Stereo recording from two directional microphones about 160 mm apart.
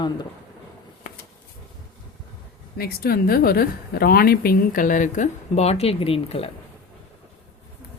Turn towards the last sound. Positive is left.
turn(degrees=35)  # may be behind; listen again after turning